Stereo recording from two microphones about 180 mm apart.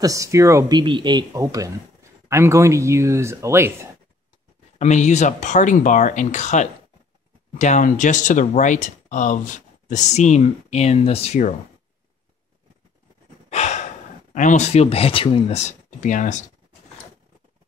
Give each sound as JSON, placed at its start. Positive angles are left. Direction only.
{"t": 0.0, "sound": "speech", "side_deg": -20}
{"t": 4.7, "sound": "speech", "side_deg": 40}
{"t": 13.5, "sound": "gasp", "side_deg": 40}
{"t": 14.3, "sound": "speech", "side_deg": 45}